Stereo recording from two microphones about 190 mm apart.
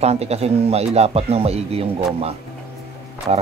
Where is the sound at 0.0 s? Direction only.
35° right (ahead or behind).